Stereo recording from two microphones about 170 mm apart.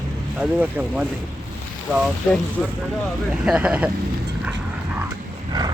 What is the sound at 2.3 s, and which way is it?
Speech, 5° left (ahead or behind).